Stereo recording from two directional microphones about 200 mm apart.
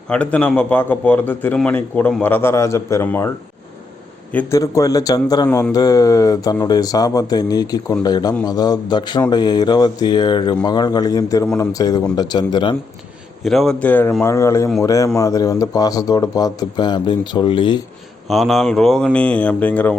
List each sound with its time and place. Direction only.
0.1 s a man's voice: 5° left (ahead or behind)
4.3 s a man's voice: 10° left (ahead or behind)
13.4 s a man's voice: centre (ahead or behind); by 17.7 s 25° left (ahead or behind)
18.3 s speech: centre (ahead or behind)